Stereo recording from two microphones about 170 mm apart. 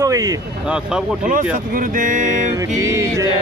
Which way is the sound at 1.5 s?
55° right (ahead or behind).